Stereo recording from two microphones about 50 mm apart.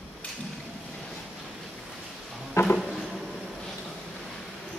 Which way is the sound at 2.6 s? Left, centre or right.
Left.